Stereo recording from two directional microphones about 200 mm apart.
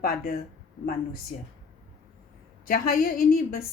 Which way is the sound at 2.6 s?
45° left (ahead or behind).